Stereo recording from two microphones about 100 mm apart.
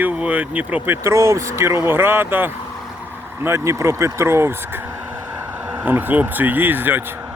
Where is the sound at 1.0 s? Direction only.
30° right (ahead or behind).